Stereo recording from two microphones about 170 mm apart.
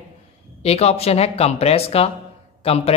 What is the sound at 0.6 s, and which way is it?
Speech, 40° left (ahead or behind).